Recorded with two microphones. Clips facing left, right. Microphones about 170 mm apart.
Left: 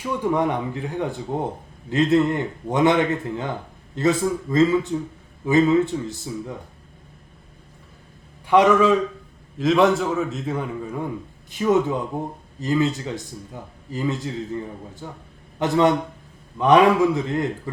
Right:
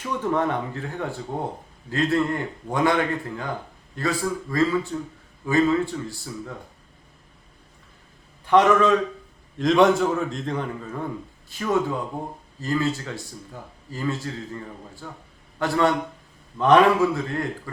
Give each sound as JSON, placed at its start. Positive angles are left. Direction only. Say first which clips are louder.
{"t": 0.0, "sound": "a man's voice", "louder": "left 2 dB", "side_deg": 10}
{"t": 8.4, "sound": "a man's voice", "louder": "left 2 dB", "side_deg": 10}